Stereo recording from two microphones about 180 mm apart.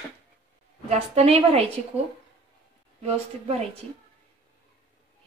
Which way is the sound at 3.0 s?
35° right (ahead or behind).